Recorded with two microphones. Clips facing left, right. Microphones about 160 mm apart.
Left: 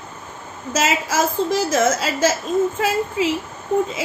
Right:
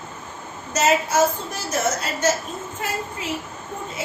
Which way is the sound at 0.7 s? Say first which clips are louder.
Right 1 dB; 90° left.